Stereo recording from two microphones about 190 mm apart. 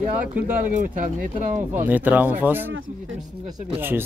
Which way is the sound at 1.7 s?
10° right (ahead or behind).